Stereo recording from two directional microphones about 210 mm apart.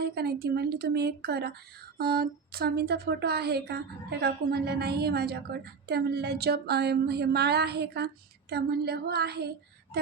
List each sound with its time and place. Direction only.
0.0 s a woman's voice: 50° right (ahead or behind)